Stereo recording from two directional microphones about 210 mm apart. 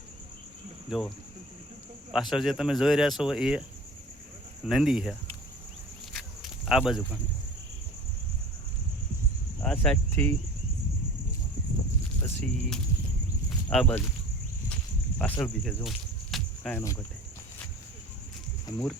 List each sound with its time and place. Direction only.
0.9 s speech: centre (ahead or behind)
2.1 s speech: centre (ahead or behind)
4.6 s speech: centre (ahead or behind)
6.1 s walk: centre (ahead or behind)
9.6 s speech: 5° left (ahead or behind)
12.2 s speech: 10° left (ahead or behind)
15.2 s speech: 15° left (ahead or behind)
15.6 s cricket: centre (ahead or behind)
16.7 s speech: 15° left (ahead or behind)
18.7 s speech: 20° left (ahead or behind)